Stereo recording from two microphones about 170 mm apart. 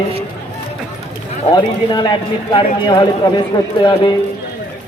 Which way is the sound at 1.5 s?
25° left (ahead or behind).